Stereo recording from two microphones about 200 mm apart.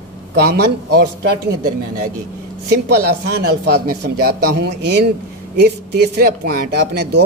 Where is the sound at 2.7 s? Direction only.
50° right (ahead or behind).